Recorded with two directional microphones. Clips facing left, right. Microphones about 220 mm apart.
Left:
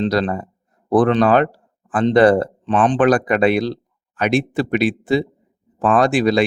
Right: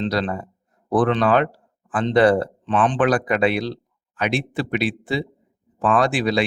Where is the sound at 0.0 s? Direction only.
45° left (ahead or behind).